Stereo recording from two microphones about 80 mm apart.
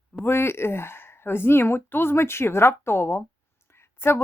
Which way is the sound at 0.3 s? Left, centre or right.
Left.